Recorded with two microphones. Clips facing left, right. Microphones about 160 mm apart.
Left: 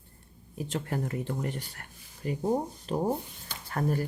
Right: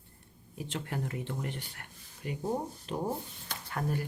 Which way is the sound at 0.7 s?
40° left (ahead or behind).